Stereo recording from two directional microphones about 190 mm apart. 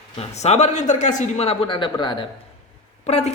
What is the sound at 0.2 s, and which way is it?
Speech, 35° left (ahead or behind).